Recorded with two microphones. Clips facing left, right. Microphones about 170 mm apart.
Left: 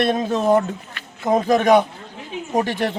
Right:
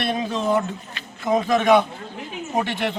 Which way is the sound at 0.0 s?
45° left (ahead or behind).